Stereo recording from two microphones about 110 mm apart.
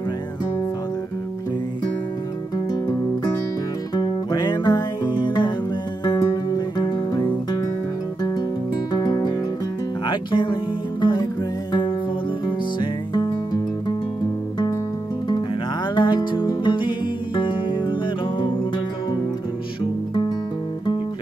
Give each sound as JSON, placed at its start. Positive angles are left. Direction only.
{"t": 3.9, "sound": "music", "side_deg": 40}
{"t": 8.9, "sound": "music", "side_deg": 40}
{"t": 12.4, "sound": "music", "side_deg": 45}
{"t": 15.9, "sound": "music", "side_deg": 45}
{"t": 19.8, "sound": "music", "side_deg": 45}